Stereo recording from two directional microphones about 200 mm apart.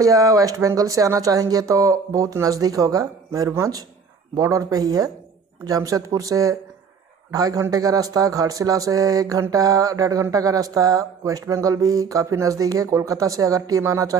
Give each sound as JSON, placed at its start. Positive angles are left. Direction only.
{"t": 0.0, "sound": "a man's voice", "side_deg": -15}